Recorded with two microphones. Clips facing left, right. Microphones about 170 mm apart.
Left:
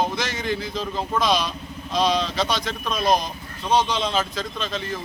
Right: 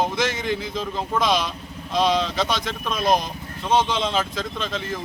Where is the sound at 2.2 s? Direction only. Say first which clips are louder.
Even; 20° left (ahead or behind).